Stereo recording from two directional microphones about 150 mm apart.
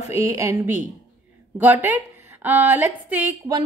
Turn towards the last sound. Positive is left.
turn(degrees=-10)  # may be behind; listen again after turning